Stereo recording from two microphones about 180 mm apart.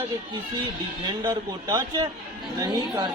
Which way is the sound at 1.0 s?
20° right (ahead or behind).